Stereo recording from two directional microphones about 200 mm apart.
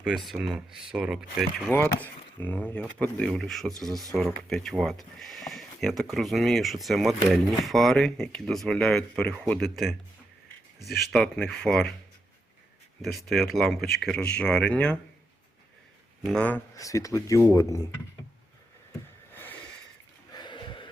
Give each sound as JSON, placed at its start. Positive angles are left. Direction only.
{"t": 0.0, "sound": "speech", "side_deg": 0}
{"t": 10.9, "sound": "speech", "side_deg": 0}
{"t": 13.0, "sound": "speech", "side_deg": 0}
{"t": 16.2, "sound": "speech", "side_deg": 5}
{"t": 19.3, "sound": "a sound", "side_deg": 10}
{"t": 20.3, "sound": "a sound", "side_deg": 25}